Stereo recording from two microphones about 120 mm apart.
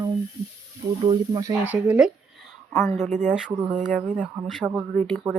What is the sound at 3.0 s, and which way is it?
Speech, 80° right.